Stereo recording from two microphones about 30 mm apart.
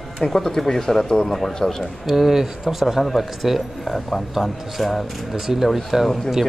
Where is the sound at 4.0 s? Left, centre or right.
Centre.